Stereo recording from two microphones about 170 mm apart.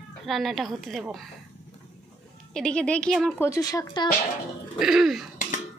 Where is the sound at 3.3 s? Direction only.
15° left (ahead or behind).